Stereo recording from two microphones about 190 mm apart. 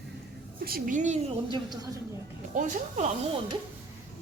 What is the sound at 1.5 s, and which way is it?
Speech, 25° right (ahead or behind).